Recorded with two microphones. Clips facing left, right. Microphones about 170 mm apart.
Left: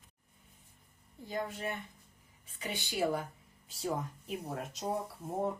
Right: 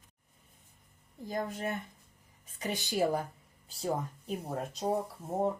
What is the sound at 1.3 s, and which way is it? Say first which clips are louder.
Speech: right 3 dB; 40° right (ahead or behind).